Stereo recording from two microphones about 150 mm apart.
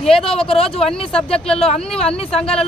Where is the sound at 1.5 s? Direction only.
40° left (ahead or behind).